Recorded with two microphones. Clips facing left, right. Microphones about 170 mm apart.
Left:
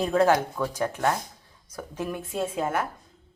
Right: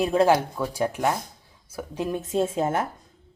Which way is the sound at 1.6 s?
5° right (ahead or behind).